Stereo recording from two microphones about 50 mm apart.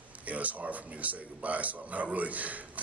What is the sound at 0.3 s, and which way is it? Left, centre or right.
Speech, right.